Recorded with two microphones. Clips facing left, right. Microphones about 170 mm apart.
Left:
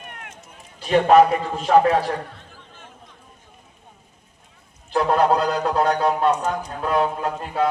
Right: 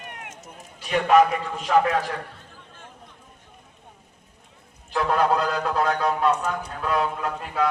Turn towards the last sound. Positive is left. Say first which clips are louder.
# left 3 dB
turn(degrees=25)  # may be behind; listen again after turning